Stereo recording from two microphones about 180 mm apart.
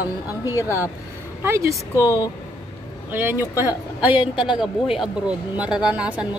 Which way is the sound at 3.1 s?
10° right (ahead or behind).